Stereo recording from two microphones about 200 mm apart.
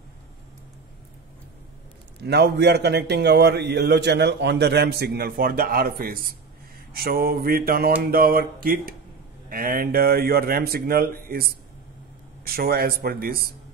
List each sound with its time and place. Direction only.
2.2 s a man's voice: 55° right (ahead or behind)
6.9 s mantra: 50° right (ahead or behind)
12.4 s mantra: 50° right (ahead or behind)